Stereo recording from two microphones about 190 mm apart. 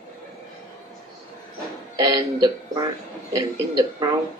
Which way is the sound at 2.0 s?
20° right (ahead or behind).